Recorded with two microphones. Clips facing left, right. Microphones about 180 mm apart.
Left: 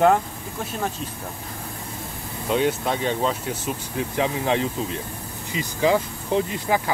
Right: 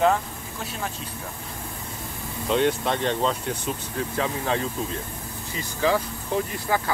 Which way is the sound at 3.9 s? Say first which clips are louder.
Left 4 dB; 15° left (ahead or behind).